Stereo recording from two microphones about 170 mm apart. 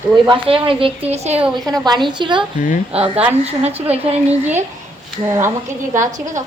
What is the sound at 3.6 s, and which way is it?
Speech, 40° right (ahead or behind).